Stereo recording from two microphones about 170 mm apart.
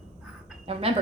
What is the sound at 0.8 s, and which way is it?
Speech, 35° right (ahead or behind).